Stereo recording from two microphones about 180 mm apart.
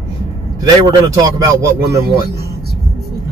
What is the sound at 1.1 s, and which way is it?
Speech, 20° right (ahead or behind).